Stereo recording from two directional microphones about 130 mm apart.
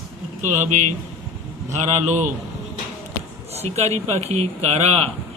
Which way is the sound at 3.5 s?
55° right (ahead or behind).